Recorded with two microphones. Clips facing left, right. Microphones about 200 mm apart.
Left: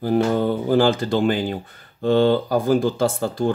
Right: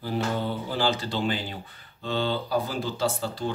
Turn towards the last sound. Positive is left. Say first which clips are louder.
# left 7 dB
turn(degrees=50)  # may be behind; listen again after turning